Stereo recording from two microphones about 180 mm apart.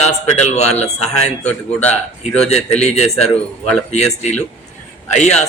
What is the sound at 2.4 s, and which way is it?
Speech, 35° left (ahead or behind).